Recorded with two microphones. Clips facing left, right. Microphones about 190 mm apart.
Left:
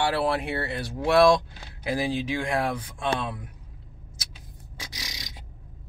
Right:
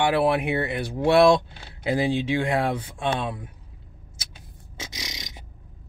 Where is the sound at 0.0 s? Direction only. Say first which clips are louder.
Right 4 dB; 20° right (ahead or behind).